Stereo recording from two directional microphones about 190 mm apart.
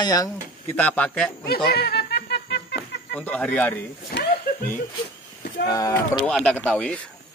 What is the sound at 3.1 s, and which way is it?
Speech, 5° left (ahead or behind).